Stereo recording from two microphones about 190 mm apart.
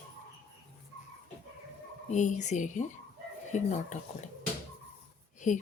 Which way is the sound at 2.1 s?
40° left (ahead or behind).